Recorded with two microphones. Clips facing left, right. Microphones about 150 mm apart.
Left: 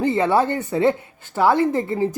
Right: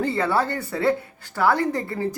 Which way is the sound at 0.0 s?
20° left (ahead or behind).